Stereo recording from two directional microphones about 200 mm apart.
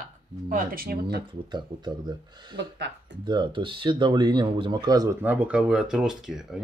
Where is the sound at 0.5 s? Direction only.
45° right (ahead or behind).